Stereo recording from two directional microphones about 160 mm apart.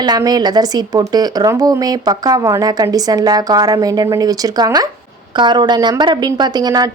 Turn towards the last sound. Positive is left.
turn(degrees=-25)  # may be behind; listen again after turning